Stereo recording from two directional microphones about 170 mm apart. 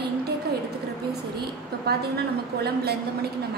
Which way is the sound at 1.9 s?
70° right (ahead or behind).